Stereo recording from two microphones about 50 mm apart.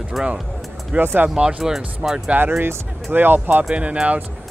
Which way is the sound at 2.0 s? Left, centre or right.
Centre.